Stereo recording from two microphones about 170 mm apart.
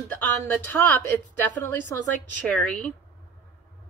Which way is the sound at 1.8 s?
50° right (ahead or behind).